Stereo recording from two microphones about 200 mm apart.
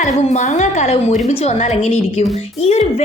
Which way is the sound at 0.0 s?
35° left (ahead or behind).